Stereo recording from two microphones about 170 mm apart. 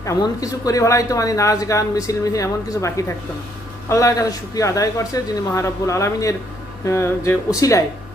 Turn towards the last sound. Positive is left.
turn(degrees=20)  # may be behind; listen again after turning